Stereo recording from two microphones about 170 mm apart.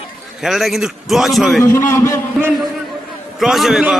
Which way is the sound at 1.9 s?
15° left (ahead or behind).